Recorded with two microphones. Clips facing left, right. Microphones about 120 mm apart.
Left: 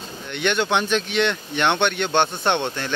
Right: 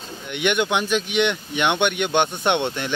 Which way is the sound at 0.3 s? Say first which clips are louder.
Even; 15° right (ahead or behind).